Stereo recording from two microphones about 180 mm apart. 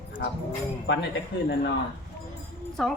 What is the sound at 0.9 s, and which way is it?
Speech, 75° left (ahead or behind).